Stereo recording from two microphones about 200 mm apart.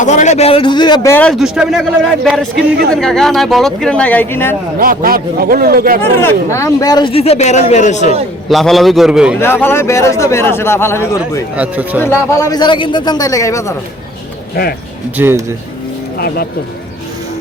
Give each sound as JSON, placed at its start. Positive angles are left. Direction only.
{"t": 0.0, "sound": "speech", "side_deg": 35}
{"t": 4.8, "sound": "a man's voice", "side_deg": -45}
{"t": 6.0, "sound": "speech", "side_deg": 10}
{"t": 8.4, "sound": "speech", "side_deg": 0}
{"t": 9.4, "sound": "a man's voice", "side_deg": 10}
{"t": 11.5, "sound": "speech", "side_deg": -10}
{"t": 12.0, "sound": "speech", "side_deg": 15}
{"t": 14.5, "sound": "speech", "side_deg": 50}
{"t": 15.1, "sound": "speech", "side_deg": -10}
{"t": 16.1, "sound": "speech", "side_deg": 50}